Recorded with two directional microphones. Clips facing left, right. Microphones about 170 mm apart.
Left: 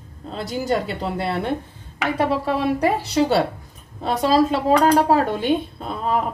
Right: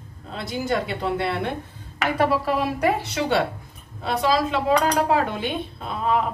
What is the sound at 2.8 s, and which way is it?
A woman's voice, 35° left (ahead or behind).